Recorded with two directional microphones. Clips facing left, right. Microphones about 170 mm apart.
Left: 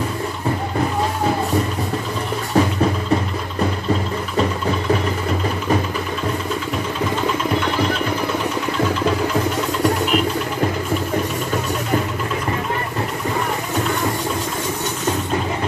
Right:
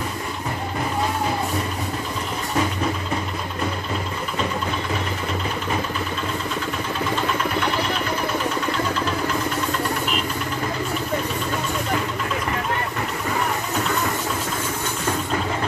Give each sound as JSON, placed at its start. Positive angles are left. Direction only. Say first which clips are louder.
{"t": 2.6, "sound": "music", "louder": "left 6 dB", "side_deg": 35}